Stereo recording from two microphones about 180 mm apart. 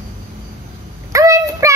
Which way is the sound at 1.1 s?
15° right (ahead or behind).